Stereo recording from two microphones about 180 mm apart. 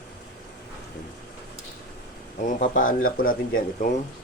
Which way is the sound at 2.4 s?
45° left (ahead or behind).